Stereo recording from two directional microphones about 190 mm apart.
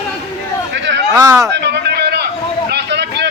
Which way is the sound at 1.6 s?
60° right (ahead or behind).